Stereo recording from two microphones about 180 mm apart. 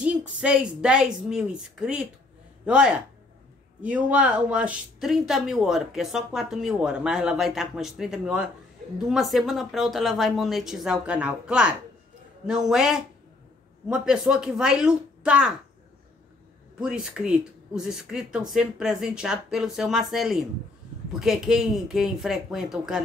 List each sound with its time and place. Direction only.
0.4 s speech: 5° right (ahead or behind)
16.8 s speech: 5° right (ahead or behind)